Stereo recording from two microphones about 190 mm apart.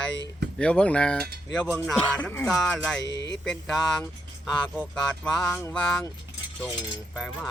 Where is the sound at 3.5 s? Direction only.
Centre (ahead or behind).